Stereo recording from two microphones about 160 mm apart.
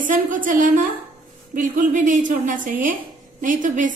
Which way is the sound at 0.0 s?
55° right (ahead or behind).